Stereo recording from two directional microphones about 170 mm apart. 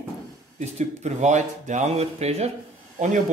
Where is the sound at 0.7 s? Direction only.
40° right (ahead or behind).